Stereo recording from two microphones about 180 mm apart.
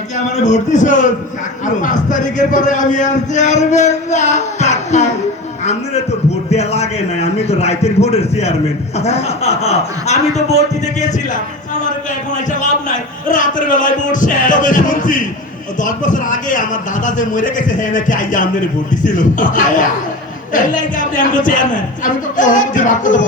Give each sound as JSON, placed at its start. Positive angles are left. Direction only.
{"t": 0.4, "sound": "a man's voice", "side_deg": 40}
{"t": 6.5, "sound": "a man's voice", "side_deg": 35}
{"t": 13.2, "sound": "a man's voice", "side_deg": 45}